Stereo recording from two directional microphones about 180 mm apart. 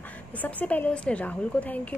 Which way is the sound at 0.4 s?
10° left (ahead or behind).